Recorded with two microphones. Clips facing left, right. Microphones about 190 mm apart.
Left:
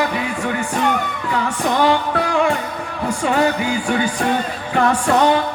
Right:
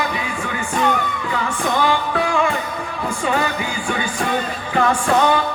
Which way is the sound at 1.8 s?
65° left (ahead or behind).